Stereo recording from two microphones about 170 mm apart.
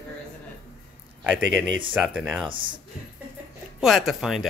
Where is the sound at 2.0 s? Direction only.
5° right (ahead or behind).